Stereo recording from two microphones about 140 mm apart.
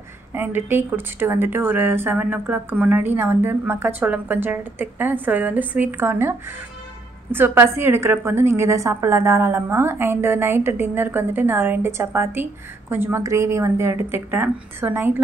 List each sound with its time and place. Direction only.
0.3 s speech: 15° right (ahead or behind)